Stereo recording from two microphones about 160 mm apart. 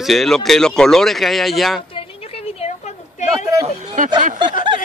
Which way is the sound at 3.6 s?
45° right (ahead or behind).